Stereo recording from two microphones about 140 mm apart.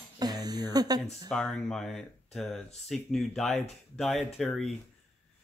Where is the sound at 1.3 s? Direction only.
Centre (ahead or behind).